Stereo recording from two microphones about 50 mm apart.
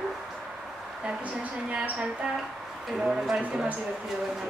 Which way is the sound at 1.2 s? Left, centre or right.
Right.